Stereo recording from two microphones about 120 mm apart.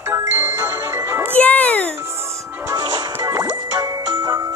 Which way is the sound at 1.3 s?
10° left (ahead or behind).